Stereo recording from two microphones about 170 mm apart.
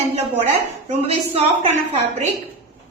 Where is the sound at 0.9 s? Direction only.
35° right (ahead or behind).